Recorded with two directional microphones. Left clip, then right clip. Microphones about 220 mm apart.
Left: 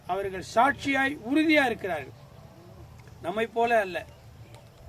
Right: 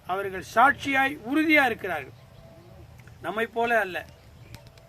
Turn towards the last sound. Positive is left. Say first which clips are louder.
# even
turn(degrees=5)  # may be behind; listen again after turning